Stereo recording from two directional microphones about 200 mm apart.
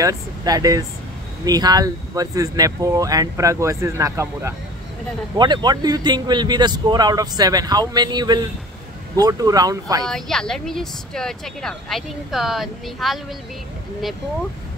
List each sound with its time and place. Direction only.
0.0 s speech: 20° right (ahead or behind)
10.0 s speech: centre (ahead or behind)